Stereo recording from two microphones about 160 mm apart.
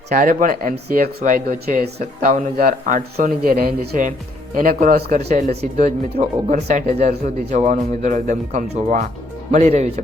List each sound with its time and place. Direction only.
0.1 s speech: 55° right (ahead or behind)
2.3 s speech: 60° right (ahead or behind); by 5.3 s 80° right
5.3 s speech: 45° right (ahead or behind)